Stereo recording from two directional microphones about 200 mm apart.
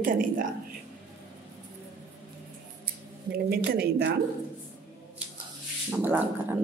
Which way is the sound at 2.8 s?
50° right (ahead or behind).